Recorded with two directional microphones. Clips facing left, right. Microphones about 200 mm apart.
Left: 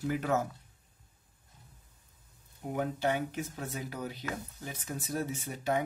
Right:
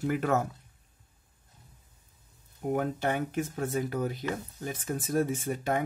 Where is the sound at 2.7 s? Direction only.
50° right (ahead or behind).